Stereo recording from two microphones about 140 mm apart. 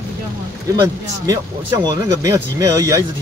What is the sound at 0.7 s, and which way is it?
Speech, 25° right (ahead or behind).